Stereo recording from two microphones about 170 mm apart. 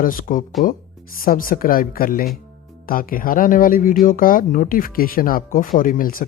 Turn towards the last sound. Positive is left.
turn(degrees=55)  # may be behind; listen again after turning